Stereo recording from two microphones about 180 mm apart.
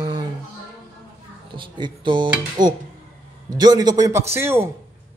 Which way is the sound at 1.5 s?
25° right (ahead or behind).